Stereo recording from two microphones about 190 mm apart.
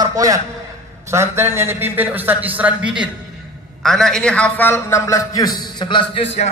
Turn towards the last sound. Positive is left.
turn(degrees=30)  # may be behind; listen again after turning